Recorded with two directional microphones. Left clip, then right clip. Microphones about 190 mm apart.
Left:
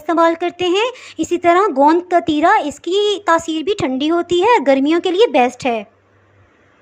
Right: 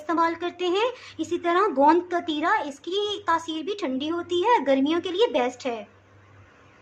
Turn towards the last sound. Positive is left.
turn(degrees=35)  # may be behind; listen again after turning